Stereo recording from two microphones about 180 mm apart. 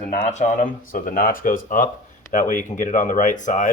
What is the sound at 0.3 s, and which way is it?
Speech, 50° left (ahead or behind).